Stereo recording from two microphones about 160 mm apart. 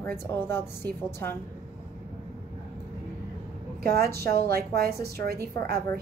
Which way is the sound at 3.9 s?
80° right.